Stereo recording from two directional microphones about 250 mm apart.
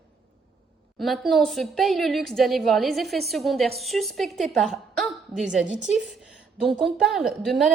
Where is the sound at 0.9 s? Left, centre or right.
Centre.